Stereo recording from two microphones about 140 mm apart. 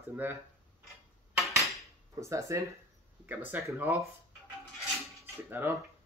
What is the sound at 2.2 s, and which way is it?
Speech, 20° right (ahead or behind).